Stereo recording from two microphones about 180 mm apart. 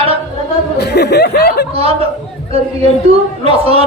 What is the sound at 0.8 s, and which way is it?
Speech, 65° left (ahead or behind).